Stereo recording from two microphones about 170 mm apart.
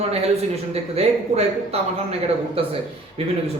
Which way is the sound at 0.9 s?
35° right (ahead or behind).